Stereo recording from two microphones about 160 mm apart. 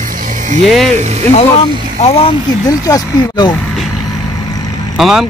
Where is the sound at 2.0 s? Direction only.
35° left (ahead or behind).